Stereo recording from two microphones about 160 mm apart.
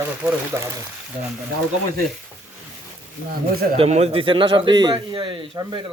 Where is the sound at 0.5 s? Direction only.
15° right (ahead or behind).